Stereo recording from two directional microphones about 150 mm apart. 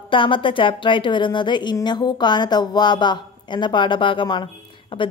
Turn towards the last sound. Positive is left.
turn(degrees=35)  # may be behind; listen again after turning